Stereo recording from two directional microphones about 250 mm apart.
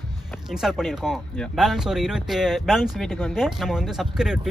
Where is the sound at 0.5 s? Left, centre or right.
Centre.